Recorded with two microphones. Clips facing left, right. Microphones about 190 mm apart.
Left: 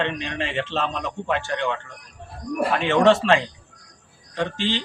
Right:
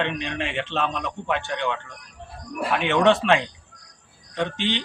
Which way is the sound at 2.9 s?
Centre (ahead or behind).